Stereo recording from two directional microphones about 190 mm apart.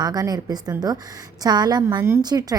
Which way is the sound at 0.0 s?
20° right (ahead or behind).